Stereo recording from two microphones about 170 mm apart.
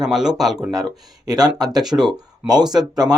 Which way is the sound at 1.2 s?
20° right (ahead or behind).